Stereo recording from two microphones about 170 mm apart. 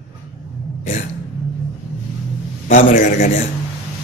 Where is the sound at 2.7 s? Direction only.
50° left (ahead or behind).